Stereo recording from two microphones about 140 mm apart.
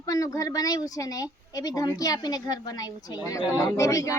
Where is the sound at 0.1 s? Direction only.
25° left (ahead or behind).